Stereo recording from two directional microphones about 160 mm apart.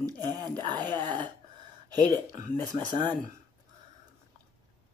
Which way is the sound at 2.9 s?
30° right (ahead or behind).